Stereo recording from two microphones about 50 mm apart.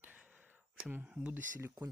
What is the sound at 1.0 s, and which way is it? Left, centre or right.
Speech, right.